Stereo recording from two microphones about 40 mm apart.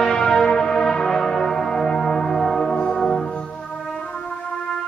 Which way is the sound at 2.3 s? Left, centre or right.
Centre.